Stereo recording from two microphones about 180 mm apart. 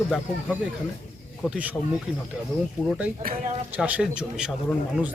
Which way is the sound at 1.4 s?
5° right (ahead or behind).